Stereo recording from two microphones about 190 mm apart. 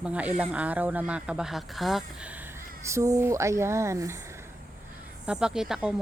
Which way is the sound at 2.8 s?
15° right (ahead or behind).